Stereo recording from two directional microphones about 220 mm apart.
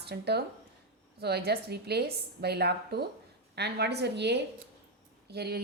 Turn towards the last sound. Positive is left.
turn(degrees=-45)  # may be behind; listen again after turning